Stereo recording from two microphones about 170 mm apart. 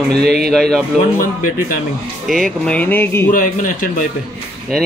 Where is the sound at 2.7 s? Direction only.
10° left (ahead or behind).